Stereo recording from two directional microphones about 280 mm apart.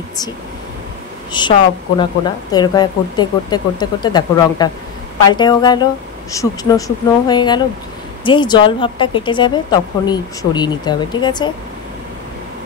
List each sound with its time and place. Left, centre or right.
1.3 s a woman's voice: centre